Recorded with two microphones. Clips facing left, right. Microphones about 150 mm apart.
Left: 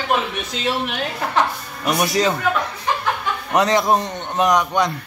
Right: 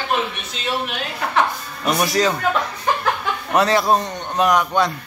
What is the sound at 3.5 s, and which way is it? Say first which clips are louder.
A man's voice: even; 20° left (ahead or behind).